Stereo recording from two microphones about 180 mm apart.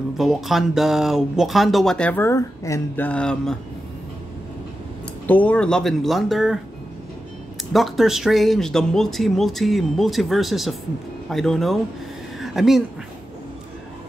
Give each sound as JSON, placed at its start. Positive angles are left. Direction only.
{"t": 0.2, "sound": "speech", "side_deg": 0}
{"t": 5.2, "sound": "speech", "side_deg": 10}
{"t": 7.7, "sound": "speech", "side_deg": 0}
{"t": 12.4, "sound": "a sound", "side_deg": 0}